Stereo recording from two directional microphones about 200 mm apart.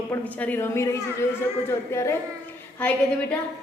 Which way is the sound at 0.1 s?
5° left (ahead or behind).